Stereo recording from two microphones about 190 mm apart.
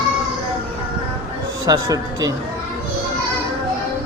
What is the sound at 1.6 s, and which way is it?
Speech, 20° right (ahead or behind).